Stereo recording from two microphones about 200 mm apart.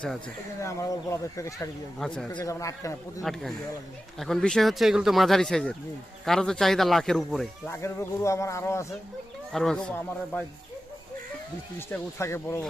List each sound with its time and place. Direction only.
0.6 s speech: 15° left (ahead or behind)
2.0 s speech: 5° left (ahead or behind)
2.3 s speech: 15° left (ahead or behind)
4.2 s speech: centre (ahead or behind)
7.7 s speech: 15° left (ahead or behind)
9.5 s speech: centre (ahead or behind)
11.9 s speech: 15° left (ahead or behind)